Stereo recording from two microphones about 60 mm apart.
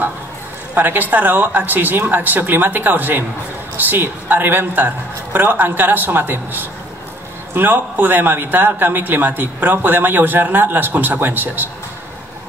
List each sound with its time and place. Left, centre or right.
0.7 s speech: right